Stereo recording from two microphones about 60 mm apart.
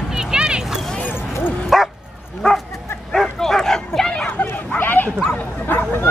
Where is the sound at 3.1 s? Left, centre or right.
Centre.